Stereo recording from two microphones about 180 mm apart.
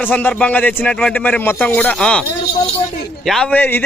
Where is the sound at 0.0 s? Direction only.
10° left (ahead or behind).